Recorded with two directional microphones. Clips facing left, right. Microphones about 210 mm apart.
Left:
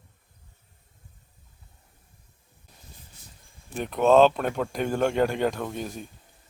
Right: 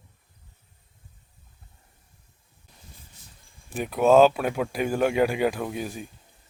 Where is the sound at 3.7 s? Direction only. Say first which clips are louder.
Right 1 dB; 5° right (ahead or behind).